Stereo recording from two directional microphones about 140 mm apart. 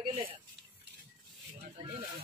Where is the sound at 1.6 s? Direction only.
45° right (ahead or behind).